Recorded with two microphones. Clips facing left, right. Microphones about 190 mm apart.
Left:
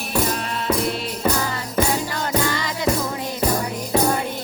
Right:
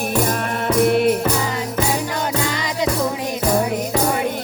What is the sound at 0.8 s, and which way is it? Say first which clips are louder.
Music: right 10 dB; 60° right (ahead or behind).